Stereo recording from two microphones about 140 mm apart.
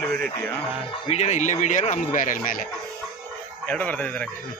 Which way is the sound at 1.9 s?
70° left (ahead or behind).